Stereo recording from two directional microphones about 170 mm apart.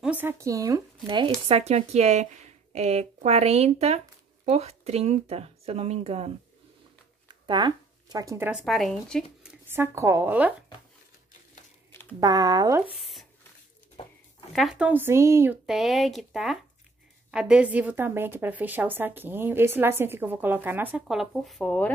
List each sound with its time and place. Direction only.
0.0 s a woman's voice: 10° right (ahead or behind); by 1.3 s 30° right (ahead or behind)
1.5 s speech: 40° right (ahead or behind)
7.4 s speech: 25° right (ahead or behind)
8.5 s speech: centre (ahead or behind)
9.5 s speech: 15° right (ahead or behind)
11.9 s a sound: 10° left (ahead or behind)
12.2 s speech: 25° right (ahead or behind)
13.0 s a sound: centre (ahead or behind)
14.5 s a woman's voice: centre (ahead or behind)
15.6 s a woman's voice: centre (ahead or behind)